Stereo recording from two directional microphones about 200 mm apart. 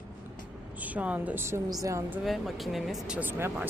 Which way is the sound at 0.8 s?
5° right (ahead or behind).